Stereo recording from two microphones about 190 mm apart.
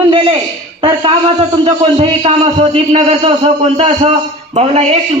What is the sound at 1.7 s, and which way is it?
A man's voice, 30° right (ahead or behind).